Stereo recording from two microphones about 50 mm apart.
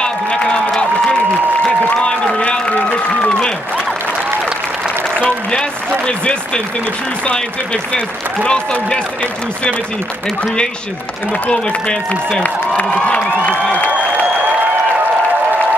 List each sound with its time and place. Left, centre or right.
0.0 s a sound: centre
2.0 s a sound: centre
3.2 s applause: centre
5.5 s speech: centre
11.5 s speech: centre
12.9 s speech: left